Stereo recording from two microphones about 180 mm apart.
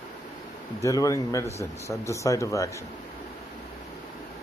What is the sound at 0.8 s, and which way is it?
Speech, 20° left (ahead or behind).